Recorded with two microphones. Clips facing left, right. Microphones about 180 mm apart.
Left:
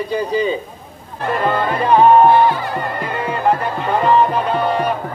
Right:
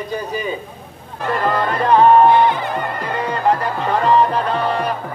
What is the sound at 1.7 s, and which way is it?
Speech, 5° left (ahead or behind).